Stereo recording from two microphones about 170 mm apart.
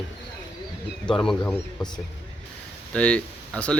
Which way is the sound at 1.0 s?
5° left (ahead or behind).